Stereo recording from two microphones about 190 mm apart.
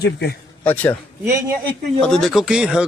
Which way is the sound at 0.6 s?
10° left (ahead or behind).